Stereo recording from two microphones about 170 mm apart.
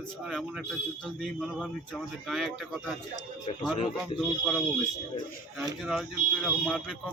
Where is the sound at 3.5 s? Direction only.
35° left (ahead or behind).